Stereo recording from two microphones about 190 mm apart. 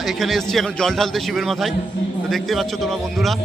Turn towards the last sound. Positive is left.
turn(degrees=0)  # may be behind; listen again after turning